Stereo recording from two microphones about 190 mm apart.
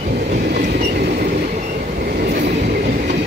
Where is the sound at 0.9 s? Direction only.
55° right (ahead or behind).